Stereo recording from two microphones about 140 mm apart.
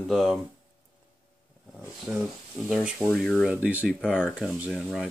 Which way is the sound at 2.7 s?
5° right (ahead or behind).